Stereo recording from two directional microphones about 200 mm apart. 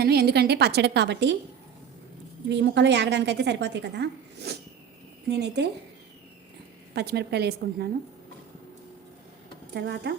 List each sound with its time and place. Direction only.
0.0 s a woman's voice: 55° right (ahead or behind)
2.5 s a woman's voice: 60° right (ahead or behind)
6.9 s a woman's voice: 55° right (ahead or behind)
9.7 s a woman's voice: 55° right (ahead or behind)